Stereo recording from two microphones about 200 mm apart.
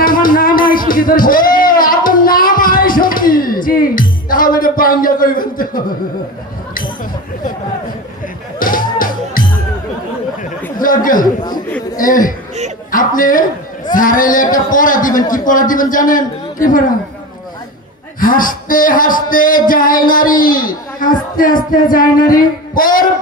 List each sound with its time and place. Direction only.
0.0 s music: 45° left (ahead or behind)
8.5 s music: 45° left (ahead or behind)
10.8 s chatter: 45° left (ahead or behind)
11.2 s chatter: 20° left (ahead or behind)
12.0 s a man's voice: 45° left (ahead or behind)
18.2 s speech: 45° left (ahead or behind)